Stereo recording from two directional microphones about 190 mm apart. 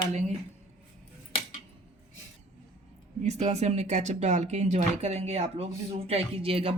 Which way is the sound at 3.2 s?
35° right (ahead or behind).